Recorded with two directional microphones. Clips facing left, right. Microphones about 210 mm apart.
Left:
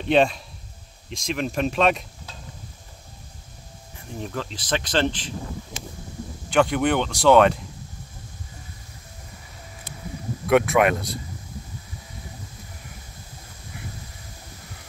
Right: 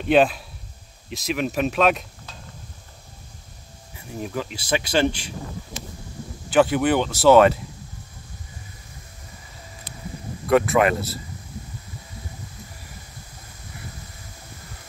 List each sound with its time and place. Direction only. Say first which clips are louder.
0.1 s speech: right 2 dB; 5° right (ahead or behind)
4.2 s speech: right 2 dB; 10° right (ahead or behind)
6.5 s speech: right 2 dB; 5° right (ahead or behind)
9.9 s a sound: left 1 dB; 45° left (ahead or behind)
10.5 s speech: even; centre (ahead or behind)